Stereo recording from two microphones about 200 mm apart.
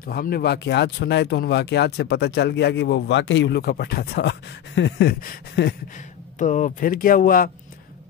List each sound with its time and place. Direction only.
0.0 s speech: 50° left (ahead or behind)
6.3 s speech: 40° left (ahead or behind)